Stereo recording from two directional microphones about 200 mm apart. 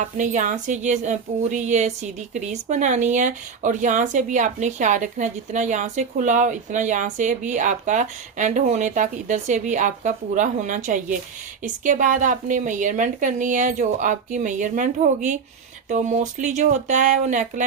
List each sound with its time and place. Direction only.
0.0 s a woman's voice: 40° right (ahead or behind)